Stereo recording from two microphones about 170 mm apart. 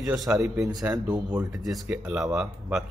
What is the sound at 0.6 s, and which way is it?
Speech, 5° right (ahead or behind).